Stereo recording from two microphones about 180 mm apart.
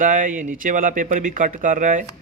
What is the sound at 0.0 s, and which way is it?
Speech, 45° right (ahead or behind).